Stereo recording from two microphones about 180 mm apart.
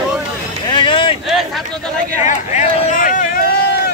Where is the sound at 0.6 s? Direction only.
25° left (ahead or behind).